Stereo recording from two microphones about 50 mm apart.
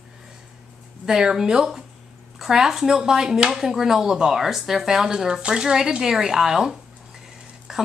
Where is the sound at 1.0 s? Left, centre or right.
Centre.